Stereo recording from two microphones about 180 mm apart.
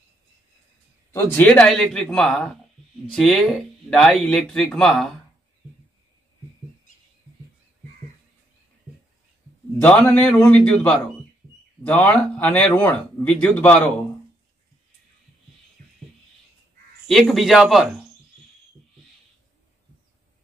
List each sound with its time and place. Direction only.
1.1 s speech: 10° left (ahead or behind)
9.8 s speech: 10° left (ahead or behind)
15.8 s music: 50° right (ahead or behind)
17.1 s speech: centre (ahead or behind)